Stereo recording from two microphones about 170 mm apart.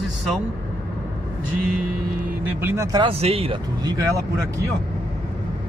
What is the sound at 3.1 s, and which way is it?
Speech, 35° right (ahead or behind).